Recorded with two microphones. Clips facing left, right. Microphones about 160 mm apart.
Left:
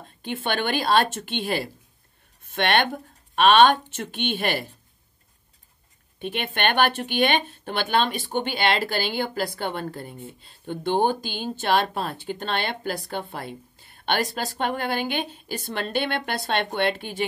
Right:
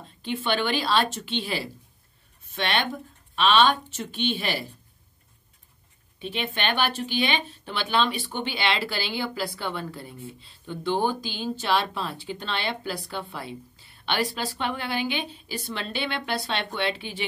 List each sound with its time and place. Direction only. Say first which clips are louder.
0.2 s speech: even; 50° left (ahead or behind)
6.1 s speech: left 2 dB; 55° left (ahead or behind)